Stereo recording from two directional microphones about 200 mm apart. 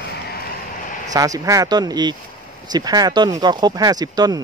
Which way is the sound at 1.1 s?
15° right (ahead or behind).